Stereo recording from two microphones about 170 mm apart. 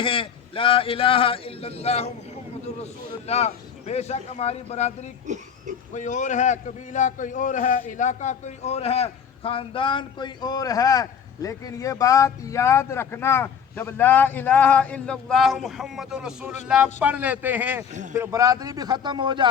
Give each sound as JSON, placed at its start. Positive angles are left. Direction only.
{"t": 0.0, "sound": "a man's voice", "side_deg": 30}
{"t": 3.2, "sound": "a man's voice", "side_deg": 40}
{"t": 5.2, "sound": "speech", "side_deg": -45}
{"t": 5.9, "sound": "a man's voice", "side_deg": 45}